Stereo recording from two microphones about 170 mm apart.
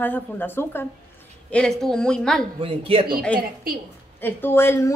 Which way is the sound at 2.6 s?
35° right (ahead or behind).